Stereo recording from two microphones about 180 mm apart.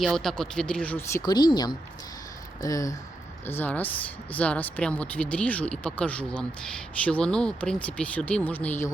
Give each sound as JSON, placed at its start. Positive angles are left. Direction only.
{"t": 0.0, "sound": "speech", "side_deg": 0}
{"t": 1.2, "sound": "speech", "side_deg": 25}